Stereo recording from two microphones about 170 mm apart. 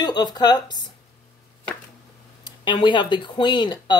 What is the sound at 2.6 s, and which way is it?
Speech, 30° left (ahead or behind).